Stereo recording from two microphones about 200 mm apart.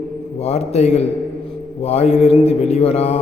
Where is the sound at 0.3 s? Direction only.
30° left (ahead or behind).